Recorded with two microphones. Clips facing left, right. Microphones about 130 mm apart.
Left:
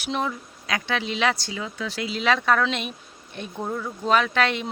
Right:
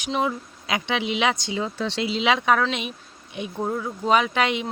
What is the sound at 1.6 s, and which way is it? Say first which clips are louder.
Speech: right 4 dB; 30° right (ahead or behind).